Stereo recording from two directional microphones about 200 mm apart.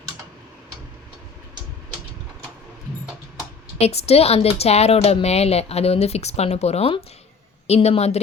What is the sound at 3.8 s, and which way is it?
A woman's voice, 30° left (ahead or behind).